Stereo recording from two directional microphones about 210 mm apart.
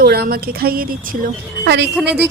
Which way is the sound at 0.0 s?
45° right (ahead or behind).